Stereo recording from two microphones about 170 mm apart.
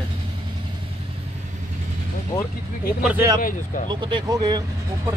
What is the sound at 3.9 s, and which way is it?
Speech, 25° right (ahead or behind).